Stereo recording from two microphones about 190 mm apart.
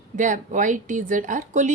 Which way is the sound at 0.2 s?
40° right (ahead or behind).